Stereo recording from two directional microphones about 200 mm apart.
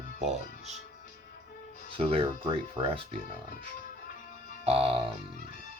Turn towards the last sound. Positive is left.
turn(degrees=-25)  # may be behind; listen again after turning